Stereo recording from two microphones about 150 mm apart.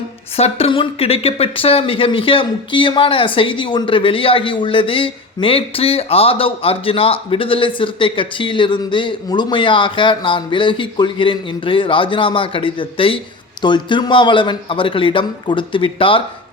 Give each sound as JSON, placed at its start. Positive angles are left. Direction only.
{"t": 0.3, "sound": "speech", "side_deg": 40}